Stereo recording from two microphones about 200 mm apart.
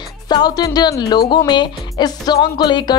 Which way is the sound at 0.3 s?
20° left (ahead or behind).